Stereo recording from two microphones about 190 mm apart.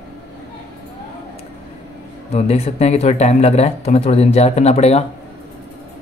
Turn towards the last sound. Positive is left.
turn(degrees=35)  # may be behind; listen again after turning